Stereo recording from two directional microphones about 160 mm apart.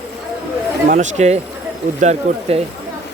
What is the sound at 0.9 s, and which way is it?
Speech, 45° right (ahead or behind).